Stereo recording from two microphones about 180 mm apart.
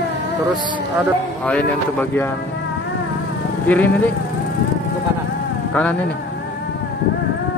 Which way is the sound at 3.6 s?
10° left (ahead or behind).